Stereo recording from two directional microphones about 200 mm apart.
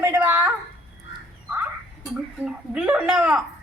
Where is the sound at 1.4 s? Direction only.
5° right (ahead or behind).